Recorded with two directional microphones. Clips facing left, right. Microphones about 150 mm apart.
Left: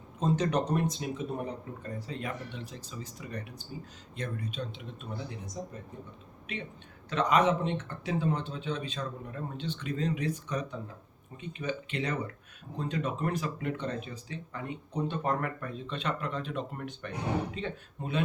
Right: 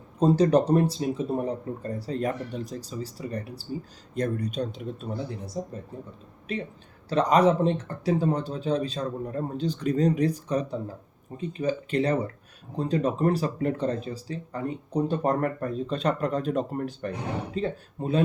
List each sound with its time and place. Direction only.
0.2 s speech: 35° right (ahead or behind)